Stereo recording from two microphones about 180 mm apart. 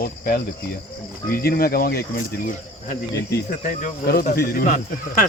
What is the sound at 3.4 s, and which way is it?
Speech, 45° left (ahead or behind).